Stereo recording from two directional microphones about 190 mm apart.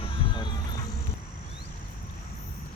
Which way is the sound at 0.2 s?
30° left (ahead or behind).